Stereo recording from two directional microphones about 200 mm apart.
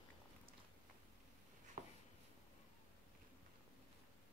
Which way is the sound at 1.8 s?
40° right (ahead or behind).